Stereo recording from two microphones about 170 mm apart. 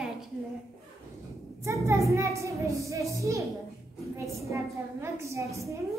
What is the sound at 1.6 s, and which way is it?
A child's voice, 15° right (ahead or behind).